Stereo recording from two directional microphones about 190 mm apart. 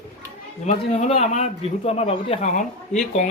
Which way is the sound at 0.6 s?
35° left (ahead or behind).